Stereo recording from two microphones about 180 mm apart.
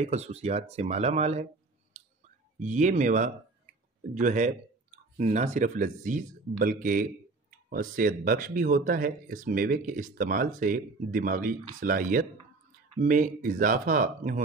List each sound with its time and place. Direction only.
0.0 s speech: 35° right (ahead or behind)
2.0 s clicking: 40° right (ahead or behind)
2.6 s speech: 40° right (ahead or behind)